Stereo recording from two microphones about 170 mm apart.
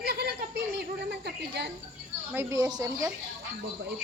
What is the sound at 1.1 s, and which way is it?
Speech, 80° right.